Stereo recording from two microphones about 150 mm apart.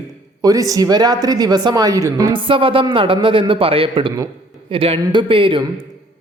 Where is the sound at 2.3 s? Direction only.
35° right (ahead or behind).